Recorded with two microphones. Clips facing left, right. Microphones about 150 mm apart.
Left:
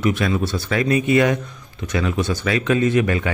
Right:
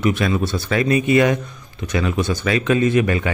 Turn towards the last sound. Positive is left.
turn(degrees=-15)  # may be behind; listen again after turning